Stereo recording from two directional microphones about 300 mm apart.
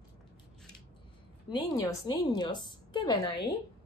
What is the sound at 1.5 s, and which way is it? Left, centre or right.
A woman's voice, centre.